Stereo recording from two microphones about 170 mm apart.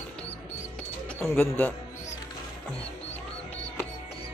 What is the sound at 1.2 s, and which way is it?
Speech, 10° left (ahead or behind).